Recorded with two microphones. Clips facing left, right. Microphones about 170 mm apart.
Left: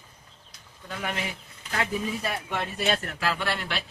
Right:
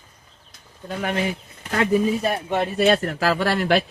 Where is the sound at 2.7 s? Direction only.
60° right (ahead or behind).